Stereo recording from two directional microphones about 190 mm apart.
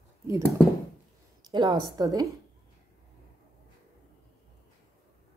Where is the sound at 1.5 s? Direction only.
25° right (ahead or behind).